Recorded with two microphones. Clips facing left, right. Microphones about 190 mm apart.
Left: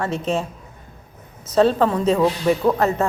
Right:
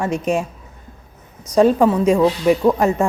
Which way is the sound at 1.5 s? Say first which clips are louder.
Right 3 dB; 10° right (ahead or behind).